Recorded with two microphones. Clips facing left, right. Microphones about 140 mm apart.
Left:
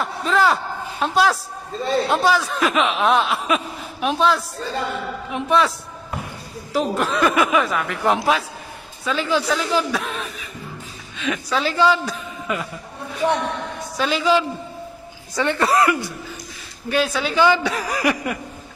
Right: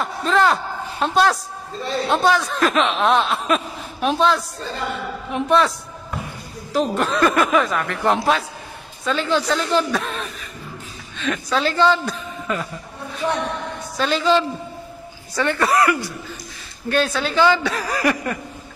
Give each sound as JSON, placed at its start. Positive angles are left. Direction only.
{"t": 0.0, "sound": "a man's voice", "side_deg": 0}
{"t": 6.7, "sound": "a man's voice", "side_deg": 5}
{"t": 13.9, "sound": "speech", "side_deg": 10}
{"t": 15.3, "sound": "a woman's voice", "side_deg": 20}
{"t": 16.9, "sound": "speech", "side_deg": 10}